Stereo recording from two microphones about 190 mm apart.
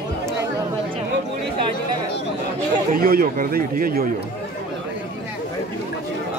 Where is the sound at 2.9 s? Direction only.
50° right (ahead or behind).